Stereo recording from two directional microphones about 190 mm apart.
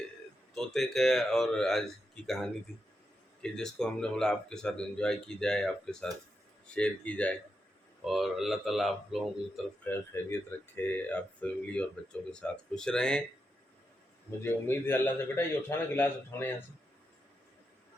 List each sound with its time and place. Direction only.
0.5 s speech: centre (ahead or behind)
9.8 s speech: 10° left (ahead or behind)
14.3 s speech: 10° left (ahead or behind)